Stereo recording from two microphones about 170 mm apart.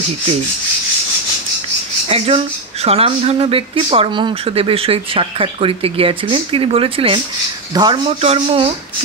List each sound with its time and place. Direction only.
2.0 s speech: 35° right (ahead or behind)